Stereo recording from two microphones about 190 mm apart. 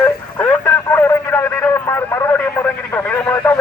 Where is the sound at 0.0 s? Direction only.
15° left (ahead or behind).